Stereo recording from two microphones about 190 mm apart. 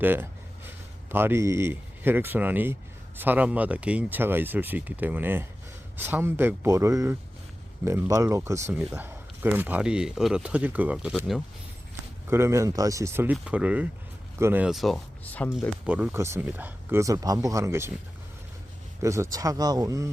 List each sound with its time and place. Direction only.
0.0 s a sound: 10° right (ahead or behind)
1.1 s speech: 10° right (ahead or behind)
12.3 s speech: 15° right (ahead or behind); by 15.4 s 10° left (ahead or behind)
15.9 s speech: 10° right (ahead or behind)
19.0 s speech: 15° right (ahead or behind)